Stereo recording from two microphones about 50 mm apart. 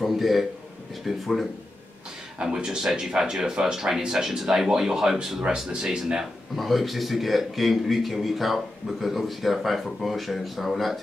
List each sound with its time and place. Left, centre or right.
0.0 s a sound: centre
1.0 s a man's voice: centre
2.4 s speech: centre
6.5 s a man's voice: centre